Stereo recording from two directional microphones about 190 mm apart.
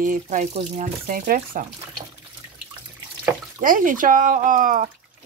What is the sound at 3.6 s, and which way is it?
Speech, 45° right (ahead or behind).